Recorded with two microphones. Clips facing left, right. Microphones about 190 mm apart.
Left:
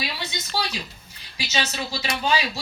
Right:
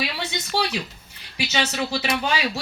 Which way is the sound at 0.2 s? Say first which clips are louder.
Right 4 dB; 70° right (ahead or behind).